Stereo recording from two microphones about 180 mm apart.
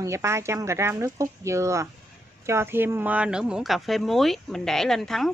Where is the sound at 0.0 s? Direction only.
15° right (ahead or behind).